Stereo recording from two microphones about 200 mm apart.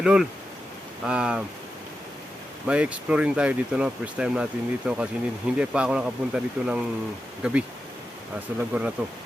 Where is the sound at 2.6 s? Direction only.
5° right (ahead or behind).